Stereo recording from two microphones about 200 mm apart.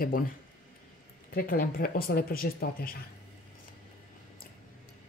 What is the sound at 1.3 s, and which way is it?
Speech, 45° left (ahead or behind).